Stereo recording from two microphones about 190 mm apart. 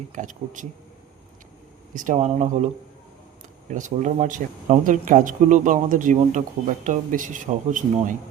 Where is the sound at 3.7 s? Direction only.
40° right (ahead or behind).